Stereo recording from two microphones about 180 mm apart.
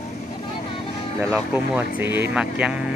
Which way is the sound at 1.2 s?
10° right (ahead or behind).